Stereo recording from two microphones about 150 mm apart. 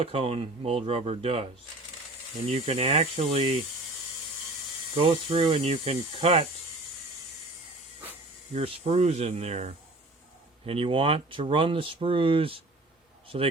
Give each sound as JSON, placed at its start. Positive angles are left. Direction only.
{"t": 0.0, "sound": "speech", "side_deg": -40}
{"t": 2.5, "sound": "speech", "side_deg": -40}
{"t": 4.9, "sound": "speech", "side_deg": -40}
{"t": 8.5, "sound": "speech", "side_deg": -45}
{"t": 10.7, "sound": "a man's voice", "side_deg": -35}